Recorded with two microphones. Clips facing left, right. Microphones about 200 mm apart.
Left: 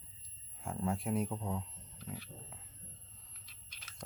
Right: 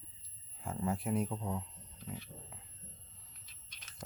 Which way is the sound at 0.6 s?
Centre (ahead or behind).